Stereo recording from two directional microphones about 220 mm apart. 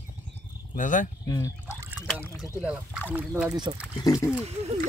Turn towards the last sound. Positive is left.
turn(degrees=-30)  # may be behind; listen again after turning